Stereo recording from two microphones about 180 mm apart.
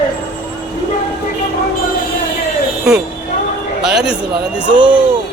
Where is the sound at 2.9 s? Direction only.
5° right (ahead or behind).